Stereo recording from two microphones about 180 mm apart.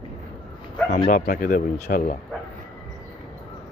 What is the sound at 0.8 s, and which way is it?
Speech, 60° left (ahead or behind).